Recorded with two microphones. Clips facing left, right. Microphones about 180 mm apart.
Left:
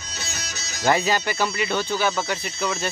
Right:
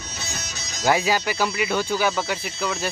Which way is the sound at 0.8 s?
10° right (ahead or behind).